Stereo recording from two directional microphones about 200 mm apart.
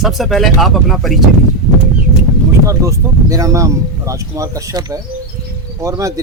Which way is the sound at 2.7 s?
15° right (ahead or behind).